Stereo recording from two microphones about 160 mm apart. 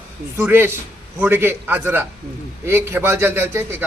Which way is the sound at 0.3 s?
15° right (ahead or behind).